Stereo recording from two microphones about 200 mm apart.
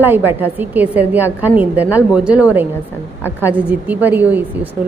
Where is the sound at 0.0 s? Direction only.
10° right (ahead or behind).